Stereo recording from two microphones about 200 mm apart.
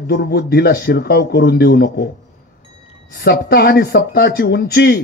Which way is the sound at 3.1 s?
50° left (ahead or behind).